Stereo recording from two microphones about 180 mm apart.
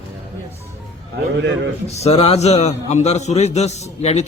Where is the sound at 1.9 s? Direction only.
35° left (ahead or behind).